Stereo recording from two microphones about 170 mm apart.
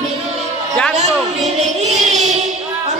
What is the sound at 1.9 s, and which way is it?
Child singing, 45° right (ahead or behind).